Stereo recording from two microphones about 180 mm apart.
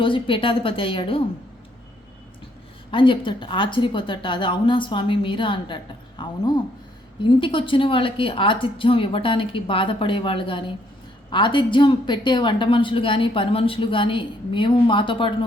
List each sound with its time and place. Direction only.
0.0 s a woman's voice: 30° left (ahead or behind)
2.9 s a woman's voice: 25° left (ahead or behind)